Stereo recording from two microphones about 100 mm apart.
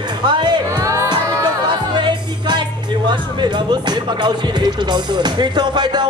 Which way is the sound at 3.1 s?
50° right (ahead or behind).